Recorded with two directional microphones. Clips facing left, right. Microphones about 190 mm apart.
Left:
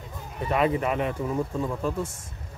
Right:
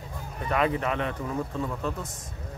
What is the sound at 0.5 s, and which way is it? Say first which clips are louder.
A man's voice: left 2 dB; 5° left (ahead or behind).